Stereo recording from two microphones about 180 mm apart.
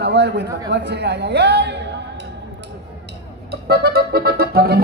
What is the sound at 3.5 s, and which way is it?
A man's voice, 60° right (ahead or behind).